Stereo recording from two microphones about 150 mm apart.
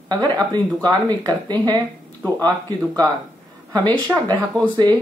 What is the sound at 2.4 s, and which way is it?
Speech, 25° right (ahead or behind).